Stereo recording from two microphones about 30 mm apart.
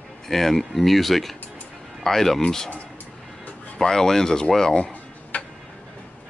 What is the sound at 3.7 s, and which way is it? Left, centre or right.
Speech, centre.